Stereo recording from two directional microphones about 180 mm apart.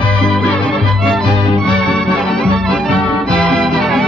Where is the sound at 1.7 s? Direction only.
5° left (ahead or behind).